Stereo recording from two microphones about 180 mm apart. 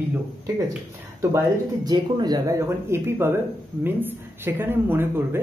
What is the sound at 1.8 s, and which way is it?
Speech, 20° right (ahead or behind).